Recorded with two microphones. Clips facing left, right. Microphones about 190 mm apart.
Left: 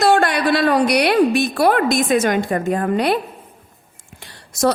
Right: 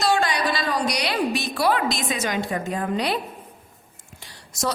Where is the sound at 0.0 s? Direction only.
60° left (ahead or behind).